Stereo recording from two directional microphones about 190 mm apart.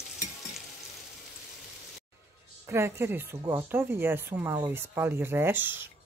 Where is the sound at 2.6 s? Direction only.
15° right (ahead or behind).